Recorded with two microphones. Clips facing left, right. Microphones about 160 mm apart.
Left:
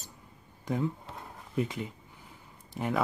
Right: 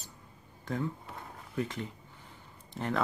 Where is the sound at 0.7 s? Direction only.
15° left (ahead or behind).